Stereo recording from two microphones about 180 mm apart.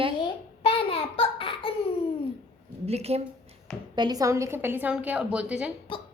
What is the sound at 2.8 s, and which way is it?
Speech, 35° right (ahead or behind).